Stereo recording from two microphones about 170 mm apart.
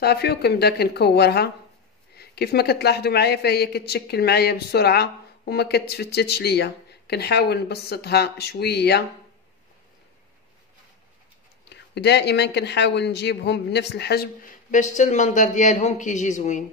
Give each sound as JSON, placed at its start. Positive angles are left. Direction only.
{"t": 0.0, "sound": "speech", "side_deg": 70}
{"t": 11.7, "sound": "speech", "side_deg": 80}
{"t": 14.7, "sound": "speech", "side_deg": 45}